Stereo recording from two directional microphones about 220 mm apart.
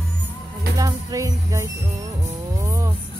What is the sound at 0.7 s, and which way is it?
Speech, 15° right (ahead or behind).